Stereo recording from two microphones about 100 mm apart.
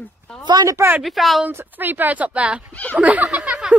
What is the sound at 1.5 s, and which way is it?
Speech, 20° right (ahead or behind).